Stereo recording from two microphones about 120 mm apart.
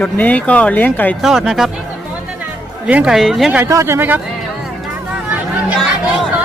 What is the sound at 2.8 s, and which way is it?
Speech, 10° right (ahead or behind).